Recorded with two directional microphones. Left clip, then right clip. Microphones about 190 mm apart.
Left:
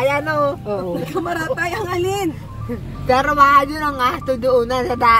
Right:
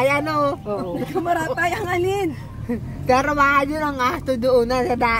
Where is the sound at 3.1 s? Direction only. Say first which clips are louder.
Left 4 dB; 10° right (ahead or behind).